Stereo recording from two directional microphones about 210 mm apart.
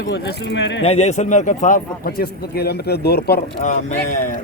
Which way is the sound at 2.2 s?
50° left (ahead or behind).